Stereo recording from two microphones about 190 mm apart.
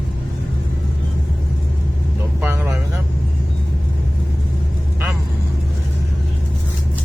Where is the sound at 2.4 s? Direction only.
10° right (ahead or behind).